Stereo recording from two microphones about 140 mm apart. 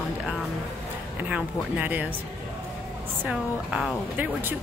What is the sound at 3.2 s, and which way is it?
Speech, 5° right (ahead or behind).